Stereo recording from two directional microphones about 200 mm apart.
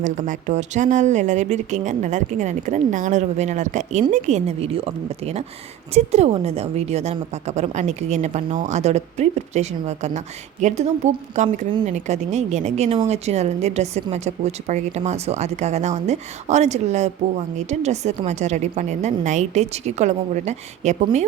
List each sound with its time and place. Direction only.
0.0 s a woman's voice: 40° right (ahead or behind)